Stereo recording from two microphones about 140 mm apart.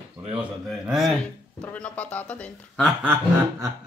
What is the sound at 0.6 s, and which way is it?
Speech, centre (ahead or behind).